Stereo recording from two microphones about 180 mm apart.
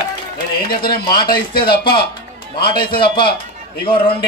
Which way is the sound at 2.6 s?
25° left (ahead or behind).